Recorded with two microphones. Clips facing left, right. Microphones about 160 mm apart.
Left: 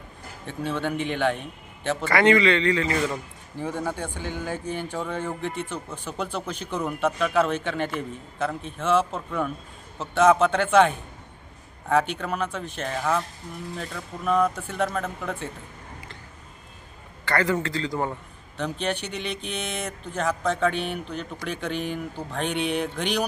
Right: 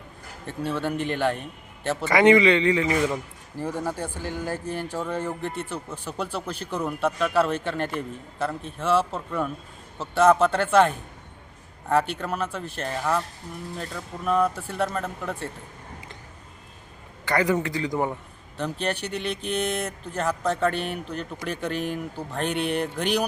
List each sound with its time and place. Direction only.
0.4 s speech: 5° right (ahead or behind)
2.0 s a man's voice: 20° right (ahead or behind)
3.6 s speech: 5° right (ahead or behind)
17.2 s a man's voice: 15° right (ahead or behind)
18.5 s a man's voice: centre (ahead or behind)